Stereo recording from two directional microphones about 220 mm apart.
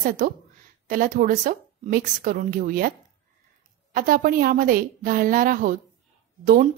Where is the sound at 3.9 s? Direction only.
40° right (ahead or behind).